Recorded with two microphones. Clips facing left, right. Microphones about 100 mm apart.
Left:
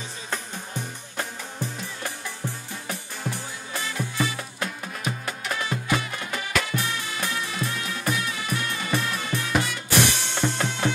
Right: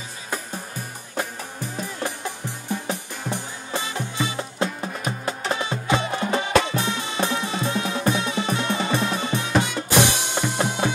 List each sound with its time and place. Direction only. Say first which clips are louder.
1.1 s music: right 5 dB; 15° right (ahead or behind)